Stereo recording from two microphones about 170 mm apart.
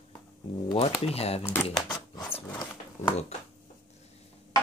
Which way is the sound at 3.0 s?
35° left (ahead or behind).